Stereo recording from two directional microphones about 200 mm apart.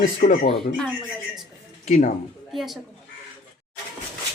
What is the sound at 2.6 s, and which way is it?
Speech, centre (ahead or behind).